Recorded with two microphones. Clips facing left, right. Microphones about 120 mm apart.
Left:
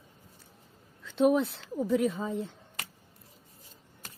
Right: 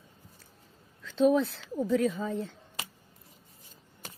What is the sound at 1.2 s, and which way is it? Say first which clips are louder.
Speech: even; 20° left (ahead or behind).